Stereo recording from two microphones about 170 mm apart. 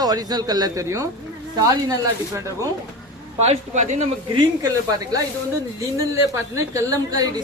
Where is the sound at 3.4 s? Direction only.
45° right (ahead or behind).